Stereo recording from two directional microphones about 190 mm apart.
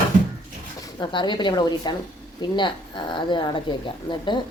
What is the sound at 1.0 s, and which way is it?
A woman's voice, 25° left (ahead or behind).